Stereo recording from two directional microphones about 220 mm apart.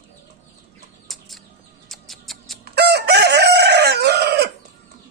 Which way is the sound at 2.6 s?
50° right (ahead or behind).